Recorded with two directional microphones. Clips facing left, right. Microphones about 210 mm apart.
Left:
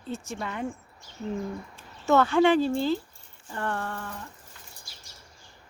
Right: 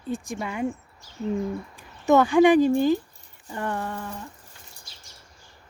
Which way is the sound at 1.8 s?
15° right (ahead or behind).